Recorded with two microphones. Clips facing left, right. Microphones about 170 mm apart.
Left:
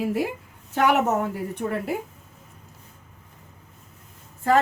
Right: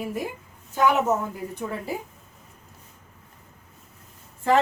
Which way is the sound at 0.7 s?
70° left (ahead or behind).